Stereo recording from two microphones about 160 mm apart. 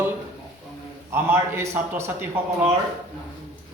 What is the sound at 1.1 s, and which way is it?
Speech, 15° right (ahead or behind).